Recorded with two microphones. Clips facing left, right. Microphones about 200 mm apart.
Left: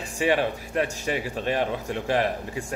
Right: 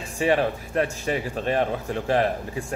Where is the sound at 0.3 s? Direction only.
35° right (ahead or behind).